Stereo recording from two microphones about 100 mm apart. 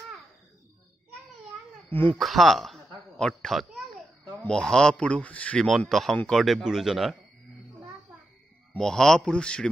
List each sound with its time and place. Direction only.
1.9 s speech: 20° left (ahead or behind)
2.1 s a child's voice: centre (ahead or behind)
5.7 s a man's voice: centre (ahead or behind)
8.7 s a man's voice: 5° left (ahead or behind)